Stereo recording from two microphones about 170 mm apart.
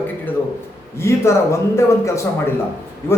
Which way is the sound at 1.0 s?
15° left (ahead or behind).